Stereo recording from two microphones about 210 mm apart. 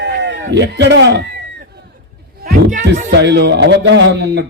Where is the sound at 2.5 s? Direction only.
40° right (ahead or behind).